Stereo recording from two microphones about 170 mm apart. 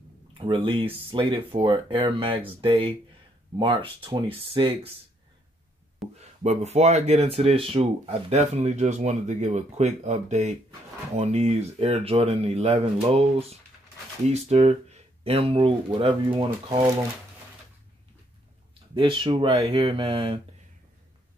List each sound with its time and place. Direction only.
0.3 s speech: 30° right (ahead or behind)
6.1 s speech: 40° right (ahead or behind)
18.9 s speech: 30° right (ahead or behind)